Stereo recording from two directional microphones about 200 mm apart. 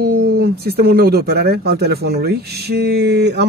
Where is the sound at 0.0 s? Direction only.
50° right (ahead or behind).